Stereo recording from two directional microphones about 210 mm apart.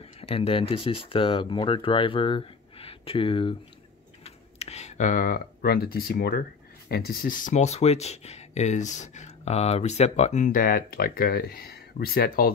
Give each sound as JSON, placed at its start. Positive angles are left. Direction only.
{"t": 0.0, "sound": "speech", "side_deg": 30}